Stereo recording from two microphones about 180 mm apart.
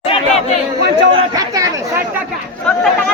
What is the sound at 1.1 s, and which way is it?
Chatter, 20° right (ahead or behind).